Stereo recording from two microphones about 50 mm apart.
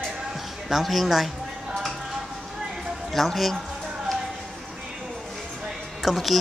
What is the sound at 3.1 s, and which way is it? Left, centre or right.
Speech, centre.